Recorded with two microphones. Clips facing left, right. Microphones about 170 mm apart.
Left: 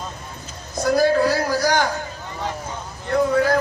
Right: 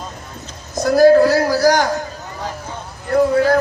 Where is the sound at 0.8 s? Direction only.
40° right (ahead or behind).